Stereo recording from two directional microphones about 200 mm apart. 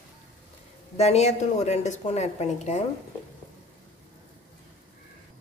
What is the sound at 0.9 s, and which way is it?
A woman's voice, 35° left (ahead or behind).